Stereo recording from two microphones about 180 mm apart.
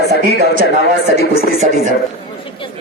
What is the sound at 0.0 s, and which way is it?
Speech, 65° left (ahead or behind).